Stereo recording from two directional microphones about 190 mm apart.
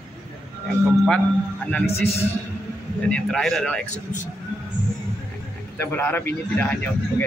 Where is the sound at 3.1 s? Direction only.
5° left (ahead or behind).